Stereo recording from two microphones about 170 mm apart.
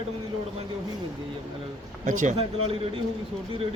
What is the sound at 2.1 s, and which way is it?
Speech, 45° right (ahead or behind).